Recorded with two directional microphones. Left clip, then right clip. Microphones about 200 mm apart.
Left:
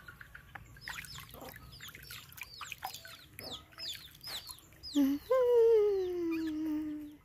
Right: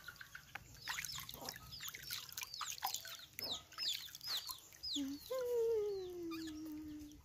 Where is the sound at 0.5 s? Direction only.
15° right (ahead or behind).